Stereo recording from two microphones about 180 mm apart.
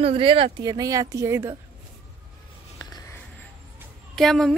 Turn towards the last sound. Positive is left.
turn(degrees=0)  # may be behind; listen again after turning